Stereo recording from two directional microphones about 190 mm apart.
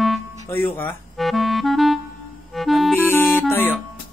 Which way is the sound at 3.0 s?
10° left (ahead or behind).